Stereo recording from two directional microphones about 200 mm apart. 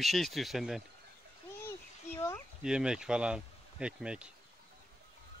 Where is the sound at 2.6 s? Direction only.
5° right (ahead or behind).